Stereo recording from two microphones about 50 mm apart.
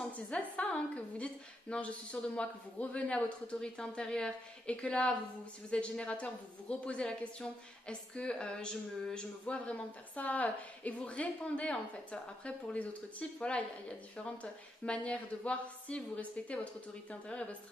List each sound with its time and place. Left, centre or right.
0.3 s a woman's voice: centre